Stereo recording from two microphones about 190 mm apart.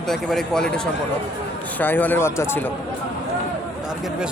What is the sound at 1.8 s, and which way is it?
Speech, 10° left (ahead or behind).